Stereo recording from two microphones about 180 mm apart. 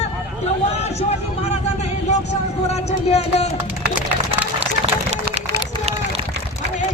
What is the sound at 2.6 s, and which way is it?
Speech, 35° left (ahead or behind).